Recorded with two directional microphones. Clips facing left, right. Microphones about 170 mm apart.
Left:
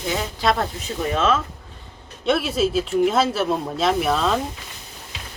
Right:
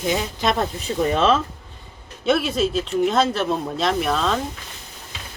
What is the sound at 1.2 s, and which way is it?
Speech, 30° right (ahead or behind).